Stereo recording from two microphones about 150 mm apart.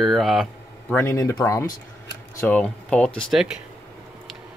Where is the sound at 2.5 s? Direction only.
10° left (ahead or behind).